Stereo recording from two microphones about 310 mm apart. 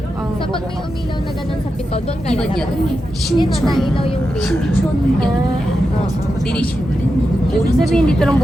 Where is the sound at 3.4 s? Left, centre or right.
Centre.